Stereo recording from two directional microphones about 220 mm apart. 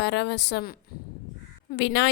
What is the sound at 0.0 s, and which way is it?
Speech, 50° left (ahead or behind).